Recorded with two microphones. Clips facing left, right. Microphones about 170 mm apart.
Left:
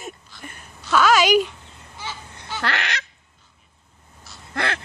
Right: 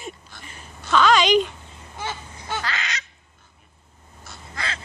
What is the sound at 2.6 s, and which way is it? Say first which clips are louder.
Honk: left 9 dB; 65° left (ahead or behind).